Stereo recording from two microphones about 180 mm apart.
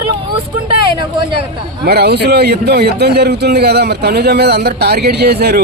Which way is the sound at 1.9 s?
60° right (ahead or behind).